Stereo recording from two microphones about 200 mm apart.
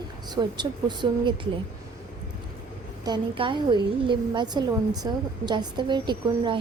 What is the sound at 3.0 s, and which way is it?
A woman's voice, 25° right (ahead or behind).